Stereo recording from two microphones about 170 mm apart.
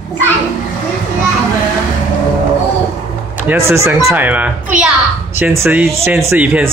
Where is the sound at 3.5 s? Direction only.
15° right (ahead or behind).